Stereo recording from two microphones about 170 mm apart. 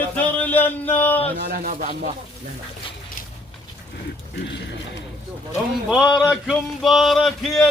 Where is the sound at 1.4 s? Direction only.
70° right (ahead or behind).